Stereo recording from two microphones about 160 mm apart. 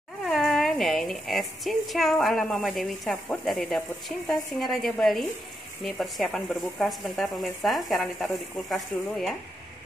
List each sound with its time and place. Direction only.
0.2 s a woman's voice: centre (ahead or behind)